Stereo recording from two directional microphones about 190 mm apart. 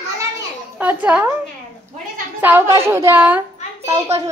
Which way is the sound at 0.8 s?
10° right (ahead or behind).